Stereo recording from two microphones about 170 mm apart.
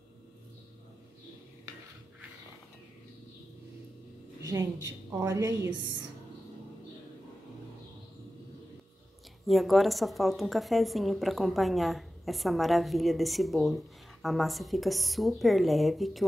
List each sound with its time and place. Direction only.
4.4 s a woman's voice: 20° right (ahead or behind)
9.5 s a woman's voice: centre (ahead or behind)